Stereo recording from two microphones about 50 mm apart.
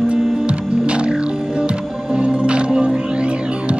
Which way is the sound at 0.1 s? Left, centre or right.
Right.